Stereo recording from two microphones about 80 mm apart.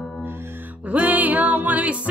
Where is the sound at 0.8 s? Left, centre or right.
Centre.